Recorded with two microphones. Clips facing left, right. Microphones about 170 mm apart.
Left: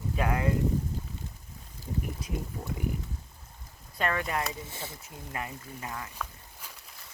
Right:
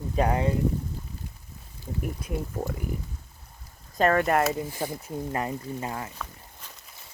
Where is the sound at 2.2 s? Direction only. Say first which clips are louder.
Right 3 dB; 55° right (ahead or behind).